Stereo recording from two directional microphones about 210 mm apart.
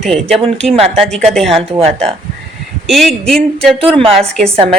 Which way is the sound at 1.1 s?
Centre (ahead or behind).